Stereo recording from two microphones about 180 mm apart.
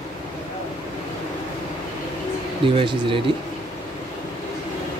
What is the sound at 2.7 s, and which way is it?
Speech, 30° right (ahead or behind).